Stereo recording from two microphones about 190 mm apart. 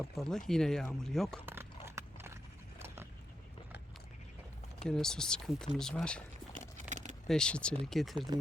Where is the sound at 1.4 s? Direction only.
10° right (ahead or behind).